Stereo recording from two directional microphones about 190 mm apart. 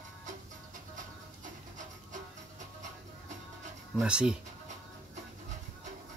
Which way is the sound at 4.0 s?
5° right (ahead or behind).